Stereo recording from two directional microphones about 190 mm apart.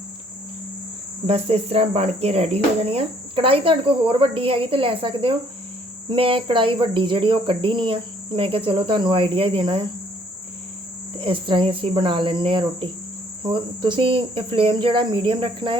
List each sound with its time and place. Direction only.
1.3 s cricket: 30° right (ahead or behind)
11.2 s cricket: 25° right (ahead or behind)